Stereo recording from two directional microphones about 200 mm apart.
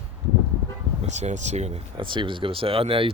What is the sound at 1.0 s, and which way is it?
Speech, 35° right (ahead or behind).